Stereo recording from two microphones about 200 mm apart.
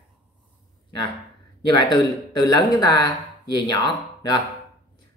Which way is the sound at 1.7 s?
20° left (ahead or behind).